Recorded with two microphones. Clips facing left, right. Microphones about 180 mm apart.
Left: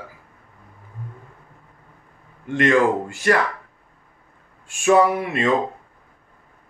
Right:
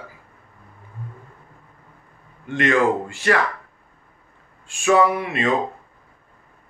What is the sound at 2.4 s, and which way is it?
Speech, 45° left (ahead or behind).